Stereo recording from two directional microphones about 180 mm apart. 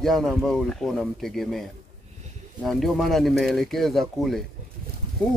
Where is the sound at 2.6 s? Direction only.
Centre (ahead or behind).